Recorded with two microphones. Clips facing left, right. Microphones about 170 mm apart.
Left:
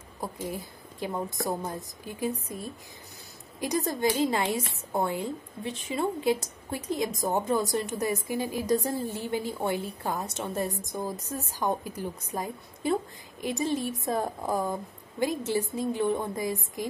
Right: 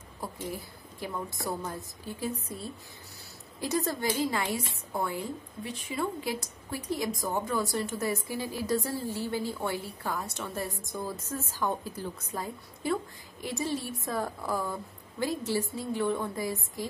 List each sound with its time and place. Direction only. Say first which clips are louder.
0.2 s a woman's voice: left 3 dB; 20° left (ahead or behind)
3.6 s a woman's voice: left 3 dB; 15° left (ahead or behind)